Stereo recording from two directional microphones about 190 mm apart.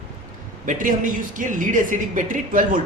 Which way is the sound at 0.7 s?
45° right (ahead or behind).